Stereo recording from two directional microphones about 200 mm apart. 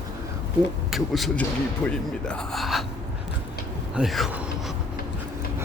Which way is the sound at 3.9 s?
Centre (ahead or behind).